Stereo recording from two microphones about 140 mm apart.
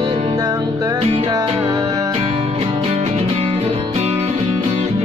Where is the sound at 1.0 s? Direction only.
45° right (ahead or behind).